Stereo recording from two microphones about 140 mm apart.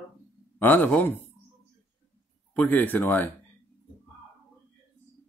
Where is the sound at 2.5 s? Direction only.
10° left (ahead or behind).